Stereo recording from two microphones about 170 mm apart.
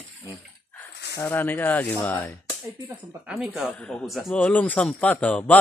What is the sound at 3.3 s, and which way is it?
Speech, 5° right (ahead or behind).